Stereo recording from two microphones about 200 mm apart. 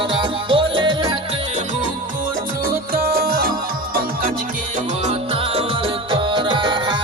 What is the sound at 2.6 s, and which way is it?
Music, 50° right (ahead or behind).